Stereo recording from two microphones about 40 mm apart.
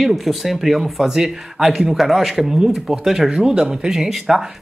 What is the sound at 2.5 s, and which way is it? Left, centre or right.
Speech, centre.